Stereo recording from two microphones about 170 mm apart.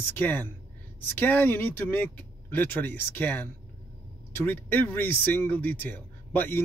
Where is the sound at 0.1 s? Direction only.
10° left (ahead or behind).